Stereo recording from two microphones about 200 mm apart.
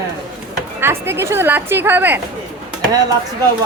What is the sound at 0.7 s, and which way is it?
Speech, 10° right (ahead or behind).